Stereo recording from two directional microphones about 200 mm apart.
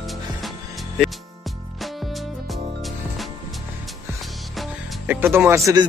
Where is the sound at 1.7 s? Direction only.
Centre (ahead or behind).